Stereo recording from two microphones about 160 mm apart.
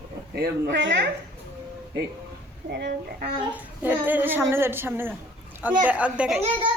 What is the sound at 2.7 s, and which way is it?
Speech, 90° right.